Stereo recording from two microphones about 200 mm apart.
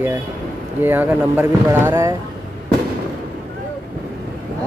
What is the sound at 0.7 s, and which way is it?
Speech, 10° right (ahead or behind).